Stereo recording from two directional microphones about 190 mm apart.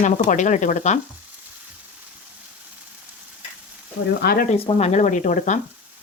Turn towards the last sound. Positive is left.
turn(degrees=40)  # may be behind; listen again after turning